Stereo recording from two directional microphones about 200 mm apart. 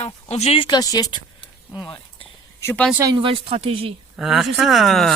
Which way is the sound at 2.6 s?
10° left (ahead or behind).